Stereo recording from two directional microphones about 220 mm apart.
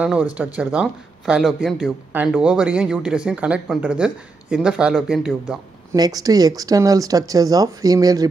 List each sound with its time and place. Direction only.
0.0 s speech: 5° right (ahead or behind)
5.9 s speech: 15° right (ahead or behind)